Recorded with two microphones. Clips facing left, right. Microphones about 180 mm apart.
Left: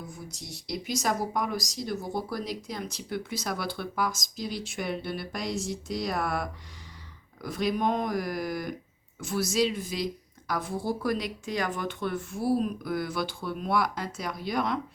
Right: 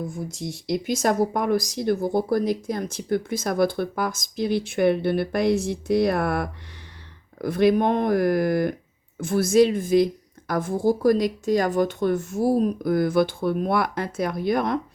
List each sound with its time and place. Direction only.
0.0 s speech: 50° right (ahead or behind)